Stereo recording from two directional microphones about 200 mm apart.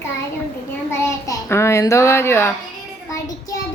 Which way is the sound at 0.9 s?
15° left (ahead or behind).